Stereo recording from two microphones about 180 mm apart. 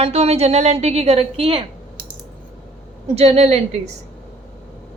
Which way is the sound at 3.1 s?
35° right (ahead or behind).